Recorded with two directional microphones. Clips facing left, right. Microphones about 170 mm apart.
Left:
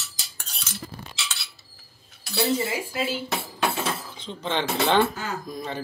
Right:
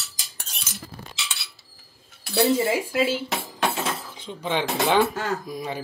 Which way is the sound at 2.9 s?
90° right.